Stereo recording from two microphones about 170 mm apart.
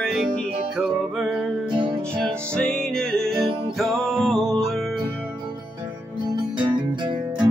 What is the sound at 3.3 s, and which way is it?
Music, 30° right (ahead or behind).